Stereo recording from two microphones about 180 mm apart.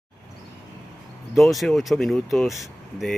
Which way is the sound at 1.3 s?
Centre (ahead or behind).